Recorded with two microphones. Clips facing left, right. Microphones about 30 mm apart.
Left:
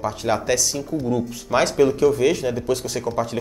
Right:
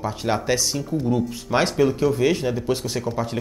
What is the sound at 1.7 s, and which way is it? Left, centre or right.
Speech, centre.